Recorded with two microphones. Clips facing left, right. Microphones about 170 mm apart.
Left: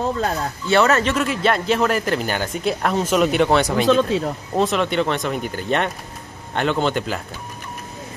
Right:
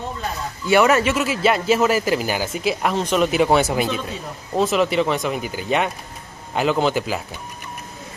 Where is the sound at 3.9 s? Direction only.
90° left.